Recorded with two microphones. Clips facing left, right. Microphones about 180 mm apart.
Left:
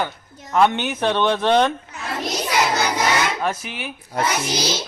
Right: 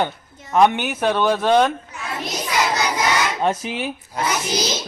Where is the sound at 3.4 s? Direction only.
30° right (ahead or behind).